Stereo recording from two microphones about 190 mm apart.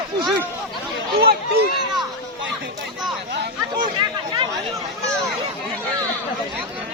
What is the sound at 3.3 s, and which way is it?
Chatter, 60° right (ahead or behind).